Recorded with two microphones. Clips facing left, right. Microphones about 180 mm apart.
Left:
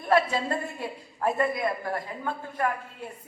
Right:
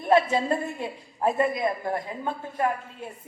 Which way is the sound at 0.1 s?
20° right (ahead or behind).